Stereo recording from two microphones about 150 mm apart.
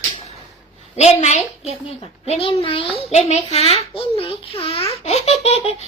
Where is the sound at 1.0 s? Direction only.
50° left (ahead or behind).